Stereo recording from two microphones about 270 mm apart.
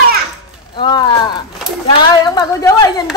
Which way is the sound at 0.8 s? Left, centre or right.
Centre.